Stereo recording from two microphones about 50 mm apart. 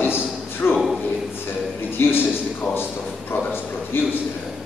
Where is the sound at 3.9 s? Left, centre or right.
Left.